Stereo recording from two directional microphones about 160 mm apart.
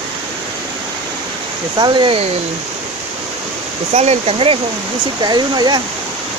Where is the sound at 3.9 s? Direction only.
45° right (ahead or behind); by 5.8 s 25° right (ahead or behind).